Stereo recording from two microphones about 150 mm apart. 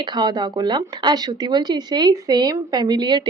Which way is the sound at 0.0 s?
30° right (ahead or behind).